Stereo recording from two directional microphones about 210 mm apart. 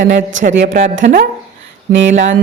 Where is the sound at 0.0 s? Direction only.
40° right (ahead or behind).